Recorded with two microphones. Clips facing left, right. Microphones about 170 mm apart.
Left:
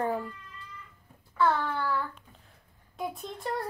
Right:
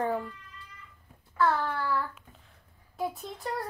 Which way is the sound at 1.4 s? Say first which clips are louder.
Even; centre (ahead or behind).